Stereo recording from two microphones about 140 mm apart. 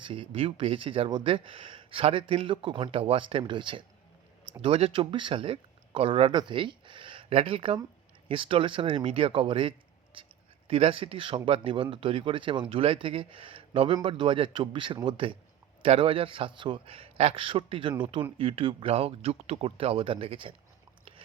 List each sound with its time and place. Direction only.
0.0 s speech: 40° right (ahead or behind)